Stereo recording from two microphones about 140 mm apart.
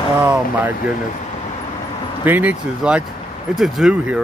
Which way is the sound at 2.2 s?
10° right (ahead or behind).